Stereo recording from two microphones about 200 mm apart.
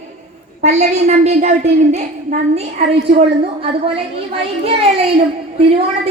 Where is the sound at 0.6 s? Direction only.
35° right (ahead or behind).